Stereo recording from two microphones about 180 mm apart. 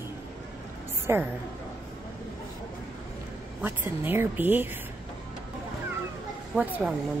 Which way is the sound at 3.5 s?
10° right (ahead or behind).